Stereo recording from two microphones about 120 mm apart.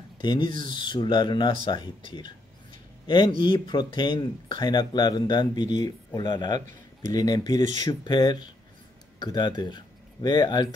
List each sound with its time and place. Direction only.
0.2 s speech: 40° left (ahead or behind)